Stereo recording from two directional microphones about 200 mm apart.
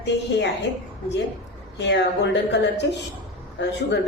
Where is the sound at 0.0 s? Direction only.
60° left (ahead or behind).